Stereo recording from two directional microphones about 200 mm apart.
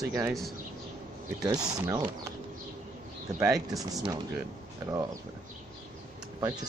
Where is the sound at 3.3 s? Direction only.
15° right (ahead or behind).